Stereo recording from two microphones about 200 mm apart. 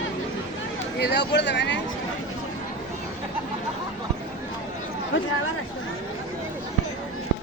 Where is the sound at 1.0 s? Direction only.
55° left (ahead or behind).